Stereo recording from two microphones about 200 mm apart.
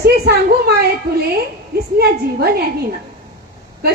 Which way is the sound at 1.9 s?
50° right (ahead or behind).